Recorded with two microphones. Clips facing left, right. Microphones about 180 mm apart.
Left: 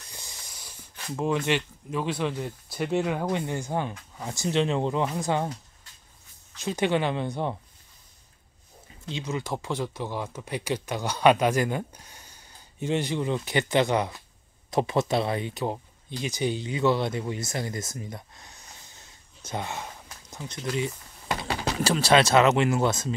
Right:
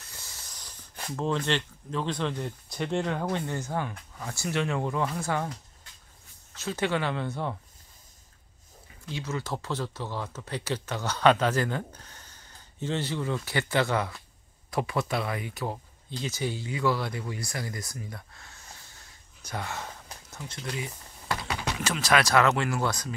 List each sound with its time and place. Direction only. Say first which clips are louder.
0.0 s speech: left 2 dB; 15° left (ahead or behind)
6.6 s speech: left 3 dB; 15° left (ahead or behind)
9.0 s speech: left 2 dB; 20° left (ahead or behind)
20.2 s a sound: left 5 dB; 20° left (ahead or behind)
21.5 s speech: left 5 dB; 35° left (ahead or behind)